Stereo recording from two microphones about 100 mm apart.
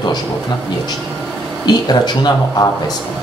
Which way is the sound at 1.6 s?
45° left (ahead or behind).